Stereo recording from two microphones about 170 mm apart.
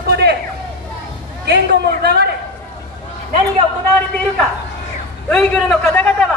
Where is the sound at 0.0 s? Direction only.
75° right (ahead or behind).